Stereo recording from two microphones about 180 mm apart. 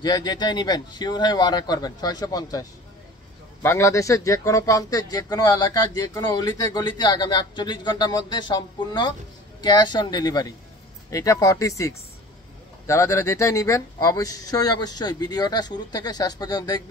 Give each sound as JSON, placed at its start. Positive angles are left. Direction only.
{"t": 0.0, "sound": "speech", "side_deg": 25}
{"t": 3.6, "sound": "speech", "side_deg": 15}